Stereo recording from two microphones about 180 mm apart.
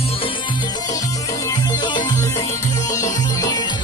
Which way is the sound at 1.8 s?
25° left (ahead or behind).